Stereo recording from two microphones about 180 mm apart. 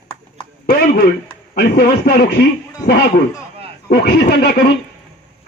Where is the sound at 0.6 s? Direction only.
55° left (ahead or behind).